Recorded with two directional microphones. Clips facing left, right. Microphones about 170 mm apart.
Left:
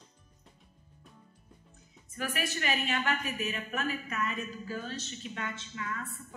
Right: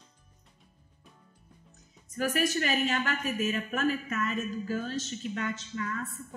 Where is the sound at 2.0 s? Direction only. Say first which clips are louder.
Right 7 dB; 40° right (ahead or behind).